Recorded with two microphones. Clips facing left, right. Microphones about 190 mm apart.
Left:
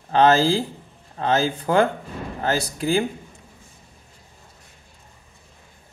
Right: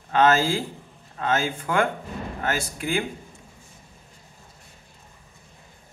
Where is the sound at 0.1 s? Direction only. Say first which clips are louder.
Left 3 dB; 35° left (ahead or behind).